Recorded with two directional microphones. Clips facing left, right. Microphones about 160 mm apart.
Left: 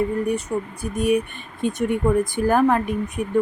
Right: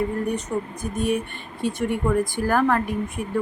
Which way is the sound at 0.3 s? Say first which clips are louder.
Left 2 dB; 10° left (ahead or behind).